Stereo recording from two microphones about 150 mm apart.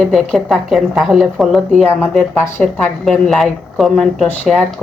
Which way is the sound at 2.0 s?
10° left (ahead or behind).